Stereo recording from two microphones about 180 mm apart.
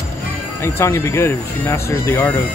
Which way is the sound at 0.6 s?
15° left (ahead or behind).